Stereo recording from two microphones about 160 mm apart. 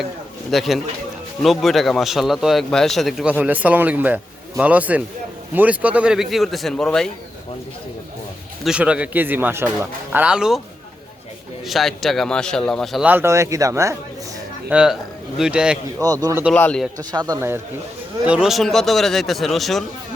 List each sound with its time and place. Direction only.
0.5 s speech: centre (ahead or behind)
8.6 s speech: 5° right (ahead or behind)
11.7 s speech: centre (ahead or behind)
13.1 s speech: 15° right (ahead or behind)
14.7 s speech: 5° right (ahead or behind)
16.0 s speech: 25° right (ahead or behind)
16.6 s speech: 10° left (ahead or behind)
17.0 s speech: 25° right (ahead or behind)
18.3 s speech: 5° right (ahead or behind)